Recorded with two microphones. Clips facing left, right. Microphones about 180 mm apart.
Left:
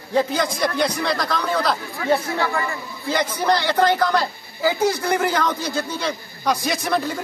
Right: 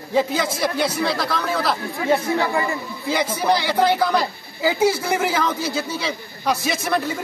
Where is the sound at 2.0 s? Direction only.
15° right (ahead or behind).